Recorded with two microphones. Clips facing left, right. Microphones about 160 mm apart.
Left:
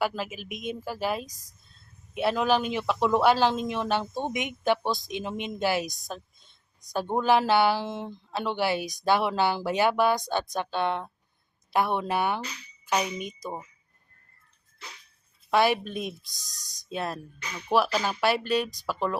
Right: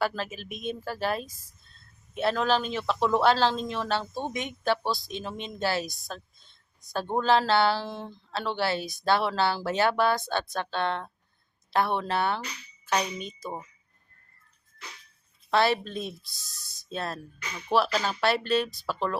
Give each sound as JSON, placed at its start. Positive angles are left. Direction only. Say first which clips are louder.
{"t": 0.0, "sound": "speech", "louder": "even", "side_deg": 10}
{"t": 6.1, "sound": "a sound", "louder": "left 2 dB", "side_deg": 15}
{"t": 6.9, "sound": "speech", "louder": "left 1 dB", "side_deg": 15}
{"t": 15.4, "sound": "speech", "louder": "left 1 dB", "side_deg": 15}